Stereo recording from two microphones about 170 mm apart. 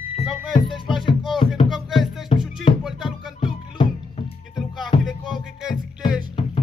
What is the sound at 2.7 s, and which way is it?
Music, 35° left (ahead or behind).